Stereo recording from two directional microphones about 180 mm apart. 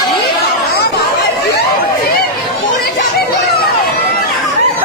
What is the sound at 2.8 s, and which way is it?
Children playing, 60° left (ahead or behind).